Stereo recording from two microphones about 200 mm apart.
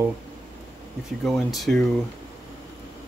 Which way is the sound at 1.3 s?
Centre (ahead or behind).